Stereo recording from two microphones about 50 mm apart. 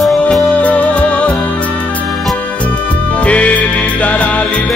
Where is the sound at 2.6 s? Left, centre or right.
Left.